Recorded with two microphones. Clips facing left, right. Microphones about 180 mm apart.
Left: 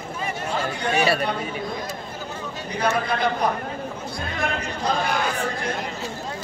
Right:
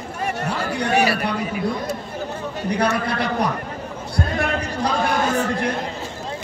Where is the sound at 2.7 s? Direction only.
70° right (ahead or behind).